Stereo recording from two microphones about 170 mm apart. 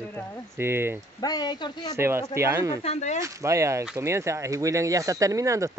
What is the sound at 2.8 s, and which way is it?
Speech, 40° left (ahead or behind).